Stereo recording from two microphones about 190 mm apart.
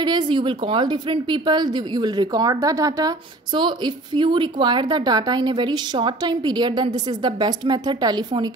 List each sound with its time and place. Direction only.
0.0 s a woman's voice: 25° right (ahead or behind)